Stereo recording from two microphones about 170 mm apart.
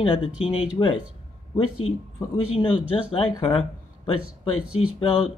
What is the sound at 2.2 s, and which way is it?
Speech, 25° left (ahead or behind).